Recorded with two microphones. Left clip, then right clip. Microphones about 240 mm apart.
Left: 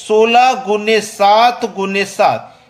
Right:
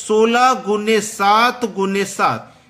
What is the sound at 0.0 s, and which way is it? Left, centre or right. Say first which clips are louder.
A man's voice: left 4 dB; centre.